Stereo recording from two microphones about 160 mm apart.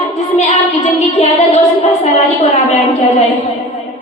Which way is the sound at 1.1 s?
40° left (ahead or behind).